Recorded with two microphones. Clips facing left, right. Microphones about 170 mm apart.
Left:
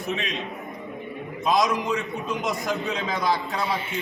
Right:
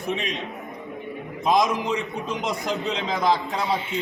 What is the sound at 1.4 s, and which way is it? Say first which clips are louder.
A man's voice: right 1 dB; 20° right (ahead or behind).